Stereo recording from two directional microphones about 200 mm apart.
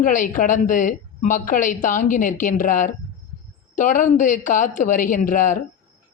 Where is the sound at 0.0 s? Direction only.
40° left (ahead or behind).